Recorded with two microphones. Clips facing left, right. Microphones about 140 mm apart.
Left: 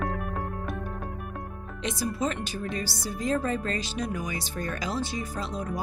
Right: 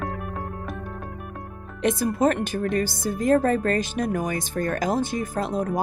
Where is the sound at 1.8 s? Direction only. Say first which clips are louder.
Right 8 dB; 55° right (ahead or behind).